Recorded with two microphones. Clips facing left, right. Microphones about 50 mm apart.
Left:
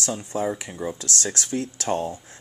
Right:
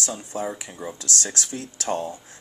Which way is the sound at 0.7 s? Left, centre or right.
Centre.